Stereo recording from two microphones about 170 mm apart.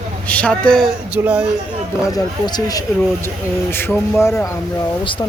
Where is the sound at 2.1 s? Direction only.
25° left (ahead or behind).